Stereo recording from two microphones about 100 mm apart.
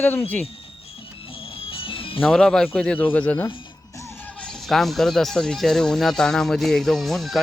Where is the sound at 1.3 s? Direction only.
65° left (ahead or behind).